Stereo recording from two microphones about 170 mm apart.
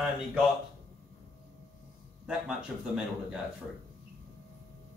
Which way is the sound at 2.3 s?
5° right (ahead or behind).